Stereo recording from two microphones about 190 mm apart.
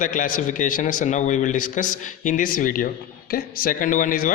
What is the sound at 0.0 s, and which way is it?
A man's voice, 45° left (ahead or behind).